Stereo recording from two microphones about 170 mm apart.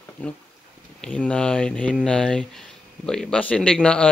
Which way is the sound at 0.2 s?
10° left (ahead or behind).